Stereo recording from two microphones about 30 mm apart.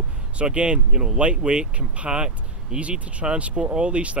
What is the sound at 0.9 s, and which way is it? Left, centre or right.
Speech, right.